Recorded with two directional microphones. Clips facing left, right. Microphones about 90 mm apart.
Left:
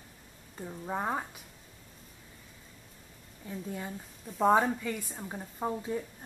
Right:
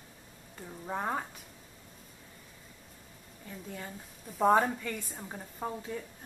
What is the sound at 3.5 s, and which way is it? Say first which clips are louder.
Speech: left 4 dB; 10° left (ahead or behind).